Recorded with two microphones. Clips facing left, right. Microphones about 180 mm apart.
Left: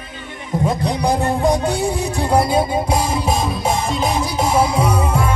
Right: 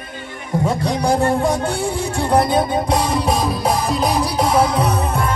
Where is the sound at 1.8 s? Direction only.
30° right (ahead or behind).